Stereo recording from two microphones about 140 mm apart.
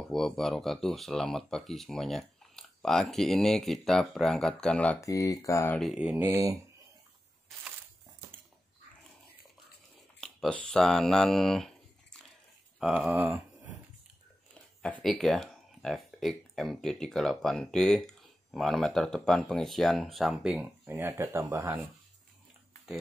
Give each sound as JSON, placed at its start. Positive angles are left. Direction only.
{"t": 0.1, "sound": "speech", "side_deg": 0}
{"t": 5.0, "sound": "speech", "side_deg": 25}
{"t": 5.8, "sound": "speech", "side_deg": -5}
{"t": 6.2, "sound": "speech", "side_deg": -25}
{"t": 10.2, "sound": "speech", "side_deg": 5}
{"t": 12.8, "sound": "speech", "side_deg": -10}
{"t": 14.8, "sound": "speech", "side_deg": 5}
{"t": 20.6, "sound": "speech", "side_deg": -15}